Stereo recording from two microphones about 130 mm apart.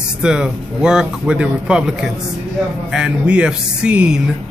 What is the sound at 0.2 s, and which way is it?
A man's voice, 5° right (ahead or behind).